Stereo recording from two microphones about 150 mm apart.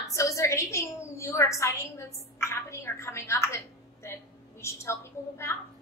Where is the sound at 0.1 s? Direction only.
20° left (ahead or behind).